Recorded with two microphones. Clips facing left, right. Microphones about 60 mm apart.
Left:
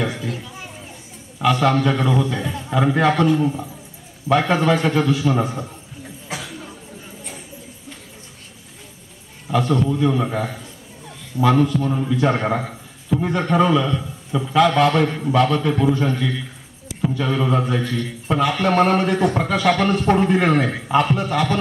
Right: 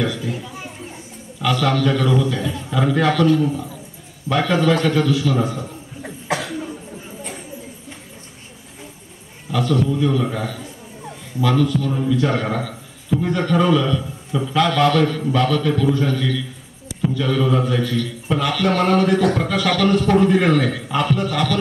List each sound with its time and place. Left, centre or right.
0.0 s a child's voice: left
0.3 s a child's voice: centre
1.4 s speech: left
2.0 s a man's voice: centre
4.3 s speech: left
6.2 s cough: right
9.5 s speech: left
14.3 s a man's voice: centre
14.7 s speech: left